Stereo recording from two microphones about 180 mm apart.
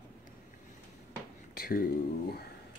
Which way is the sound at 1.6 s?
55° left (ahead or behind).